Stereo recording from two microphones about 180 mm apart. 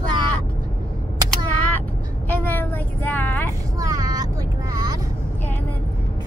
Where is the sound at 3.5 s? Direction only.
20° right (ahead or behind).